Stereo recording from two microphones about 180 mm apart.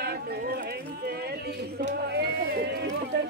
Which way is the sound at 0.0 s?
65° right (ahead or behind).